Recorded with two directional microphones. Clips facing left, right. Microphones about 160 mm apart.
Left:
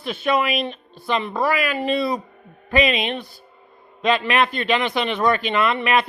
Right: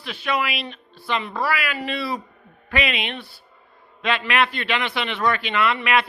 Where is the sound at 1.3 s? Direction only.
20° left (ahead or behind).